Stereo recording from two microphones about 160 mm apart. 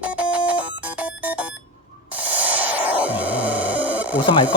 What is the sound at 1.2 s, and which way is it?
Alarm clock, 10° right (ahead or behind).